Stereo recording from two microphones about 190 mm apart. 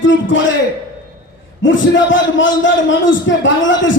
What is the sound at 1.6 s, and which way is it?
A man's voice, 75° left (ahead or behind).